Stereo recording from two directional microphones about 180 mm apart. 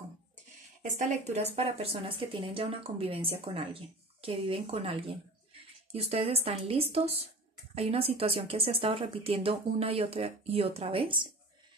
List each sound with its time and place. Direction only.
0.9 s speech: 40° right (ahead or behind)